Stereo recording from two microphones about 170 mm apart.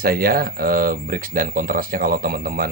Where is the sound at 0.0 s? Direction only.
60° right (ahead or behind).